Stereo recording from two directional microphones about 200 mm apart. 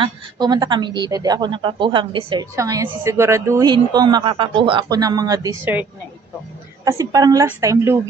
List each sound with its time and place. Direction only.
0.0 s a woman's voice: 20° right (ahead or behind)
6.8 s a woman's voice: 15° right (ahead or behind)